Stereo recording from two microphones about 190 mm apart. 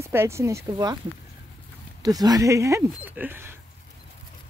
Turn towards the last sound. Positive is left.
turn(degrees=-10)  # may be behind; listen again after turning